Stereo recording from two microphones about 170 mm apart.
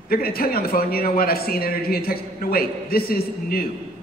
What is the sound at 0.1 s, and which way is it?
A man's voice, 60° left (ahead or behind).